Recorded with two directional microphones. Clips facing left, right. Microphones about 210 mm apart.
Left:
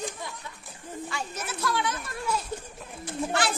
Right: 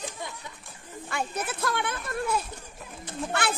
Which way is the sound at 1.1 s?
55° right (ahead or behind).